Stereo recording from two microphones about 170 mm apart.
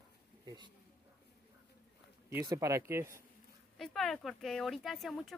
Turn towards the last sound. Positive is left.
turn(degrees=0)  # may be behind; listen again after turning